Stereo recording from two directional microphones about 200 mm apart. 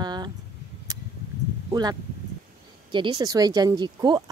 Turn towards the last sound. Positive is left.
turn(degrees=-20)  # may be behind; listen again after turning